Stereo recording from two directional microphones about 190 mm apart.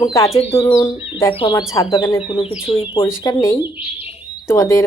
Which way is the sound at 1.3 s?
25° left (ahead or behind).